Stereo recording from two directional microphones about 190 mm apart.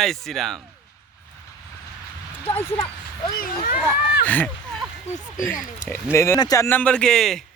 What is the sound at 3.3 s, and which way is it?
Speech, 45° left (ahead or behind).